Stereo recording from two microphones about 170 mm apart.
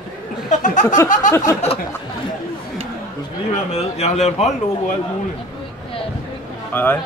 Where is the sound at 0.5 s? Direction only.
45° left (ahead or behind).